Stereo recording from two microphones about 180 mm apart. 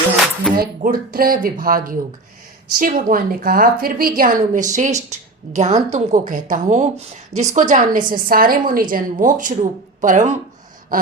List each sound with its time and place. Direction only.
0.5 s a woman's voice: 55° right (ahead or behind)